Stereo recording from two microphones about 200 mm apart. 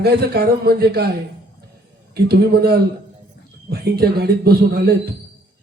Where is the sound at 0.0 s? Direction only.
50° right (ahead or behind).